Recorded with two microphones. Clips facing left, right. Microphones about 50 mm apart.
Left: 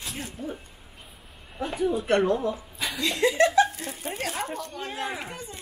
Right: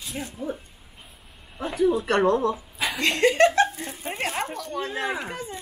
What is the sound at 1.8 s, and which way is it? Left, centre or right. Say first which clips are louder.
Speech: right 2 dB; right.